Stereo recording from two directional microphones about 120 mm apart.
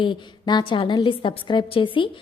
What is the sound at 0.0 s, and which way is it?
A woman's voice, 40° left (ahead or behind).